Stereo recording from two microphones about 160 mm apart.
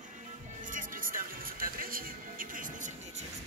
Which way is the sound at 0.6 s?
55° right (ahead or behind).